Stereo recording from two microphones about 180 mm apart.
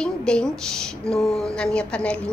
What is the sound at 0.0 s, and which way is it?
A woman's voice, 5° left (ahead or behind).